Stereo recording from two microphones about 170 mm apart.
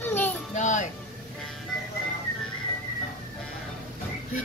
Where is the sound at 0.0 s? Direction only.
10° left (ahead or behind).